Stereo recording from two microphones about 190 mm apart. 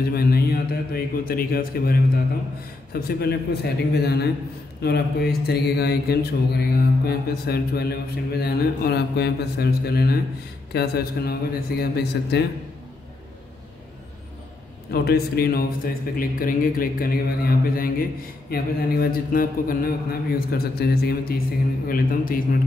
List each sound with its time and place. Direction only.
0.0 s a man's voice: 55° left (ahead or behind)
14.9 s speech: 55° left (ahead or behind)